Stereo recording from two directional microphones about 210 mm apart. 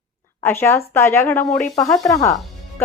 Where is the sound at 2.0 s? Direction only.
15° left (ahead or behind).